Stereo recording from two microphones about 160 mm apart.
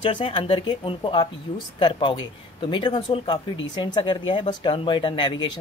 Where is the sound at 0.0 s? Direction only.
30° left (ahead or behind).